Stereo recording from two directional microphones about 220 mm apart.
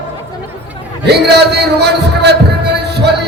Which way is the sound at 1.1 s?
50° right (ahead or behind).